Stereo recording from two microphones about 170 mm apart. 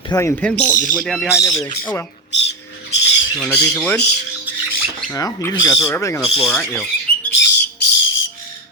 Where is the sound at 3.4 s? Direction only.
5° left (ahead or behind).